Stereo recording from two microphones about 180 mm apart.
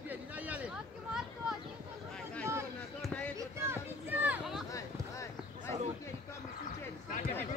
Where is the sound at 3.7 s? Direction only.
10° right (ahead or behind).